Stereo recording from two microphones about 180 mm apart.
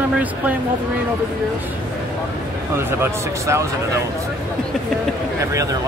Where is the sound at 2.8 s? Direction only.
15° right (ahead or behind).